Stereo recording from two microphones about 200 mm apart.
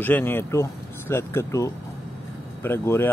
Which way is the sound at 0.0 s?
10° left (ahead or behind).